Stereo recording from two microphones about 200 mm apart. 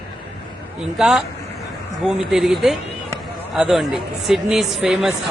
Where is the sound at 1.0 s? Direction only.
Centre (ahead or behind).